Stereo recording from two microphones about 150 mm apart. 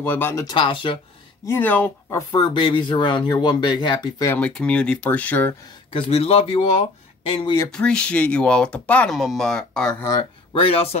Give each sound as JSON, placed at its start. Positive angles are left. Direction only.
{"t": 0.0, "sound": "speech", "side_deg": 15}
{"t": 0.5, "sound": "speech", "side_deg": 35}
{"t": 1.4, "sound": "speech", "side_deg": 15}
{"t": 2.0, "sound": "speech", "side_deg": 25}
{"t": 4.3, "sound": "speech", "side_deg": 5}
{"t": 5.9, "sound": "speech", "side_deg": 40}
{"t": 7.7, "sound": "speech", "side_deg": 5}
{"t": 10.5, "sound": "speech", "side_deg": 40}